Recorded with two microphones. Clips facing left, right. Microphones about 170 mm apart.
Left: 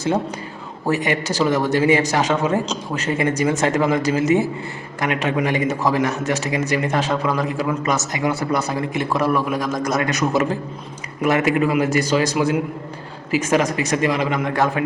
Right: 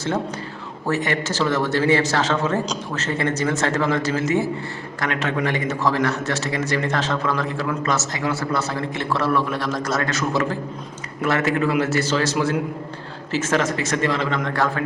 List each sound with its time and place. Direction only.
0.9 s a man's voice: 15° left (ahead or behind)